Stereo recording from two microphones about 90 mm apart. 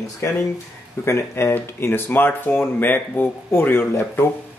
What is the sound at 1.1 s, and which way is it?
Speech, 30° left (ahead or behind).